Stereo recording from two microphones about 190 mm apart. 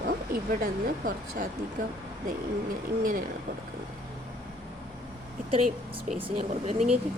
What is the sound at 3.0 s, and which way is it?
Speech, 45° right (ahead or behind).